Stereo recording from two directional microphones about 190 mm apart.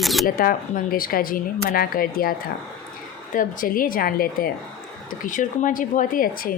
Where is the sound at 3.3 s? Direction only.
45° left (ahead or behind).